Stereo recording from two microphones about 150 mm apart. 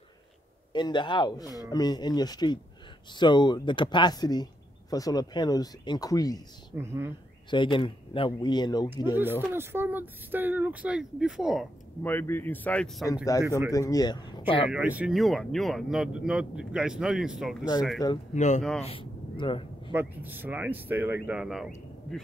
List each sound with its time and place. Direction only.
0.7 s speech: 30° left (ahead or behind)
6.8 s speech: 15° right (ahead or behind)
7.5 s speech: 35° left (ahead or behind)
9.1 s speech: 15° right (ahead or behind)
12.0 s speech: 15° left (ahead or behind)
13.1 s speech: 25° left (ahead or behind)
14.7 s speech: 10° right (ahead or behind)
18.3 s speech: 50° left (ahead or behind)
18.8 s speech: 40° left (ahead or behind)
19.9 s speech: 15° right (ahead or behind)